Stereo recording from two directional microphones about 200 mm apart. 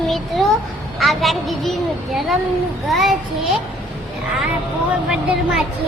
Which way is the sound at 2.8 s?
Centre (ahead or behind).